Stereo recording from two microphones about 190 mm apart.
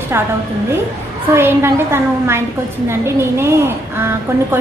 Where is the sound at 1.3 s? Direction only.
15° right (ahead or behind).